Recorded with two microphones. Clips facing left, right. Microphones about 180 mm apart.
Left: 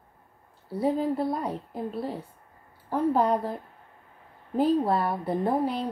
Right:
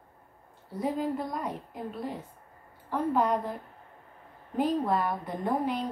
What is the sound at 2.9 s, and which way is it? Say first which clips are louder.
Speech: left 3 dB; 35° left (ahead or behind).